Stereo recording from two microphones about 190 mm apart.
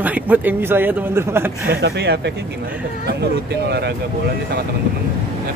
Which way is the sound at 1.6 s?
65° right (ahead or behind).